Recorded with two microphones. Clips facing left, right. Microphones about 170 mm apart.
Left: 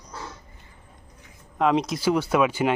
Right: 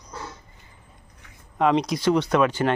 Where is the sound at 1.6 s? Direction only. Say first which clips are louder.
Right 1 dB; 5° left (ahead or behind).